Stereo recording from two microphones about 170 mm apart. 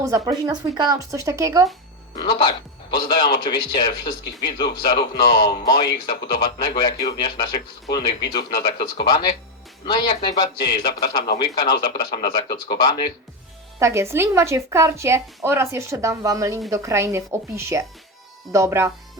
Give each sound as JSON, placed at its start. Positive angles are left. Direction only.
{"t": 0.0, "sound": "speech", "side_deg": -20}
{"t": 2.9, "sound": "speech", "side_deg": 25}
{"t": 13.7, "sound": "speech", "side_deg": -15}